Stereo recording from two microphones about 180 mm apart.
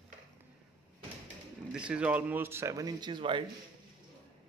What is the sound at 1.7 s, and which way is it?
Speech, 5° right (ahead or behind).